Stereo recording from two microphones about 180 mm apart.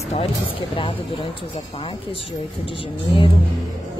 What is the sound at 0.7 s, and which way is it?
A woman's voice, 30° left (ahead or behind).